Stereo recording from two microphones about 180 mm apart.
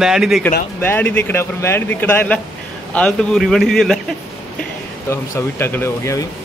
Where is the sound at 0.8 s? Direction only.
10° left (ahead or behind).